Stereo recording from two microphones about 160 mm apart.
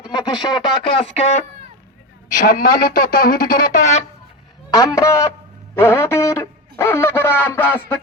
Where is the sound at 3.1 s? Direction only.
65° left (ahead or behind).